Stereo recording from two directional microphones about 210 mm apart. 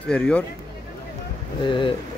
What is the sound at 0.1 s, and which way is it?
Speech, 5° left (ahead or behind).